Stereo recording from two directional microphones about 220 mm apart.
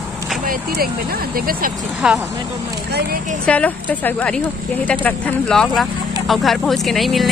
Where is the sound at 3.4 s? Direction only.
5° left (ahead or behind).